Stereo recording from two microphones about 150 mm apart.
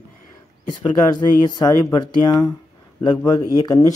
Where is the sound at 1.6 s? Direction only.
30° left (ahead or behind).